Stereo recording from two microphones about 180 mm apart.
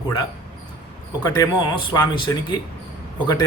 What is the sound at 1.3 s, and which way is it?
A man's voice, 20° left (ahead or behind).